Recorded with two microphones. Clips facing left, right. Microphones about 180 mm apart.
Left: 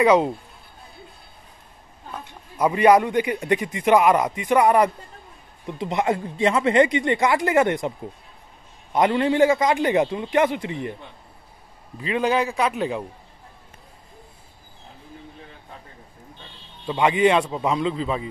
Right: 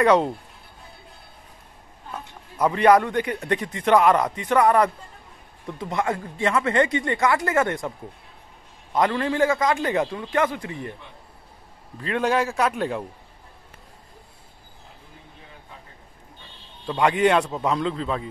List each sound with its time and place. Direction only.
0.0 s a man's voice: centre (ahead or behind)
2.6 s a man's voice: 10° left (ahead or behind)
8.9 s speech: 20° left (ahead or behind)
12.0 s a man's voice: 5° left (ahead or behind)
16.8 s a man's voice: 5° left (ahead or behind)